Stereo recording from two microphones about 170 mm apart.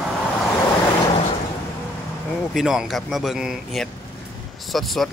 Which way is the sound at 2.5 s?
Centre (ahead or behind).